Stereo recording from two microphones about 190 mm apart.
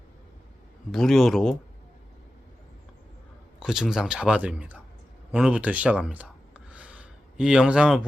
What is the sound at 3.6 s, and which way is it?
Speech, centre (ahead or behind).